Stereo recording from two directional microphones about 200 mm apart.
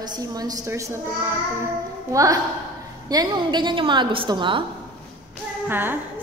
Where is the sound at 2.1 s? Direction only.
15° right (ahead or behind).